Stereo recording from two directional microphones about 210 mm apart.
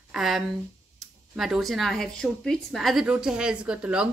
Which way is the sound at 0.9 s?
Centre (ahead or behind).